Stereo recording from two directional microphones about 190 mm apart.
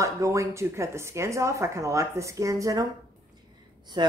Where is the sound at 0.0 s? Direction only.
15° right (ahead or behind).